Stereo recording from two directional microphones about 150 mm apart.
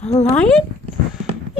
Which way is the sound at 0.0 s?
50° left (ahead or behind).